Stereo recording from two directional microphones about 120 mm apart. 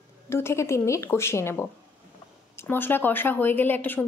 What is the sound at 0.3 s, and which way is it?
Speech, 20° left (ahead or behind).